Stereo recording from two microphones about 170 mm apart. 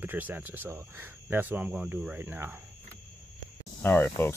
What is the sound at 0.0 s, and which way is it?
Speech, 10° right (ahead or behind).